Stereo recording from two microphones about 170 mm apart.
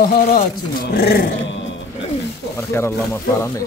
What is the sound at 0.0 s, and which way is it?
Speech, 60° left (ahead or behind).